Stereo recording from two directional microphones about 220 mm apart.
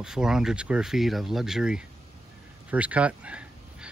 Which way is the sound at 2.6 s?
5° right (ahead or behind).